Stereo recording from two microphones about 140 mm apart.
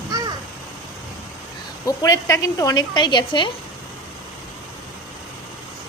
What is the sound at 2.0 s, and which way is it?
Speech, 25° left (ahead or behind).